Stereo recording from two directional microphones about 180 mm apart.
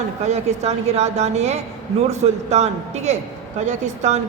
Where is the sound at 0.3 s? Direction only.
40° right (ahead or behind).